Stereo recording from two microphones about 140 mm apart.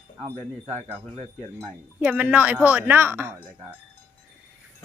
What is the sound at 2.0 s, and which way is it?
A woman's voice, 10° right (ahead or behind).